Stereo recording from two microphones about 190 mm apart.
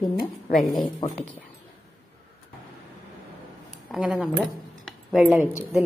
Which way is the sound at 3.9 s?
Centre (ahead or behind).